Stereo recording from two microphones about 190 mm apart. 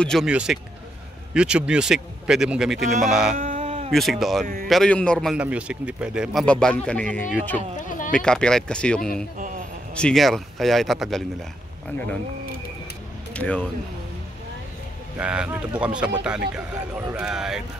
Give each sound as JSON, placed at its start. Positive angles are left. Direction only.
{"t": 0.0, "sound": "a man's voice", "side_deg": 0}
{"t": 3.3, "sound": "a sound", "side_deg": -40}
{"t": 3.9, "sound": "a man's voice", "side_deg": 0}
{"t": 13.3, "sound": "speech", "side_deg": 5}
{"t": 15.1, "sound": "a man's voice", "side_deg": -5}